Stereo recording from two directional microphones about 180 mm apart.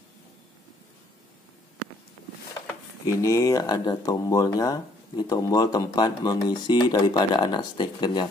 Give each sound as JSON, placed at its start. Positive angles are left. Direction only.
{"t": 2.6, "sound": "speech", "side_deg": 15}